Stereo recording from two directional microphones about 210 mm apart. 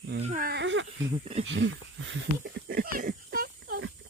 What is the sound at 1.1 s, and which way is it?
Speech, 30° right (ahead or behind).